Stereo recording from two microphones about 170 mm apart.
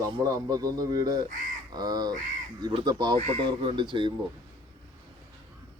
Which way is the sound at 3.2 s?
35° right (ahead or behind).